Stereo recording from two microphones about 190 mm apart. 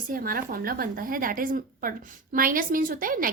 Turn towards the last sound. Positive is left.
turn(degrees=-50)  # may be behind; listen again after turning